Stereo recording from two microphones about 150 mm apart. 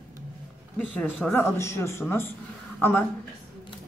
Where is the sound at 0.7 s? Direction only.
10° left (ahead or behind).